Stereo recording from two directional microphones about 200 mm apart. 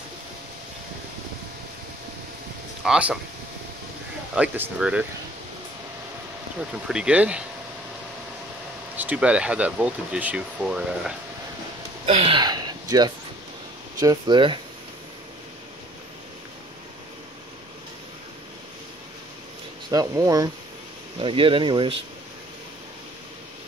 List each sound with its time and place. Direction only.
2.8 s speech: 5° right (ahead or behind)
4.4 s speech: 5° right (ahead or behind)
6.7 s speech: 5° right (ahead or behind)
8.9 s speech: 5° right (ahead or behind)
12.1 s speech: 30° right (ahead or behind)
19.9 s speech: 20° right (ahead or behind)